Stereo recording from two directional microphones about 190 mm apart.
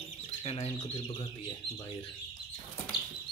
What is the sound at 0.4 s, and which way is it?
Speech, 35° left (ahead or behind).